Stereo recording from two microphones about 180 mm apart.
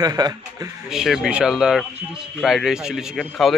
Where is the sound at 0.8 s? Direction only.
Centre (ahead or behind).